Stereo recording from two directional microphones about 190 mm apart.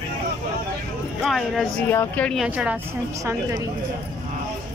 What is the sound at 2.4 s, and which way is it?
Speech, 5° right (ahead or behind).